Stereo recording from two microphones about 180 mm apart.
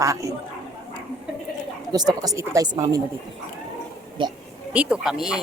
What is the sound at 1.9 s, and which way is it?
Speech, 20° right (ahead or behind).